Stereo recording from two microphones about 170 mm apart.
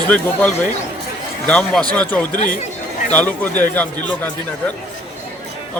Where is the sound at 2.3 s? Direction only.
55° left (ahead or behind).